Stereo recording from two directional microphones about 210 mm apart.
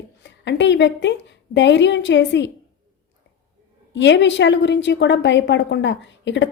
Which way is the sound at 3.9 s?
60° left (ahead or behind).